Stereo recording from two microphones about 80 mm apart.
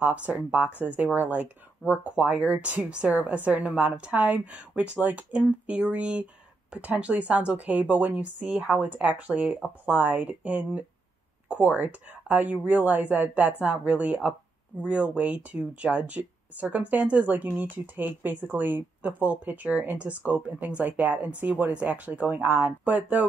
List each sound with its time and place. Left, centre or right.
0.0 s speech: centre